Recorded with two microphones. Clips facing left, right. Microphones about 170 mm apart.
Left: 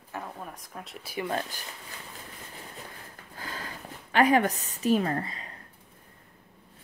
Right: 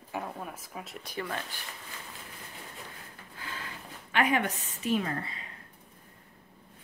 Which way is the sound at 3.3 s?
40° left (ahead or behind).